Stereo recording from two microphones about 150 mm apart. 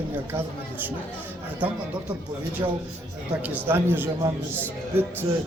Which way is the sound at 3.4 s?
10° right (ahead or behind).